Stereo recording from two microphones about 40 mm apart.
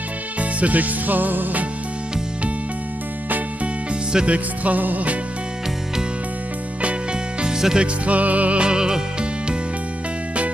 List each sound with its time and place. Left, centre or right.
0.4 s music: right
4.3 s music: right
7.4 s music: centre
7.8 s music: right
8.6 s music: centre